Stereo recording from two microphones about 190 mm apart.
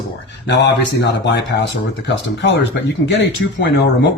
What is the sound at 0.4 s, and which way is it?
Speech, 65° left (ahead or behind).